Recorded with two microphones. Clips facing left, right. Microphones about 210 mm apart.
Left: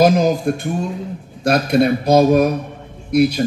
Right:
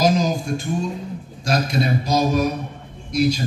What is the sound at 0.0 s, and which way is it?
A man's voice, 60° left (ahead or behind).